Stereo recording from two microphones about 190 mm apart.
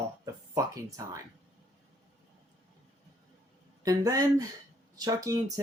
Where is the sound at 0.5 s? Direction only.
15° right (ahead or behind).